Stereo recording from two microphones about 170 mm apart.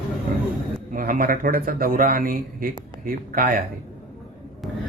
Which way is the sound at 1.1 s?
55° right (ahead or behind).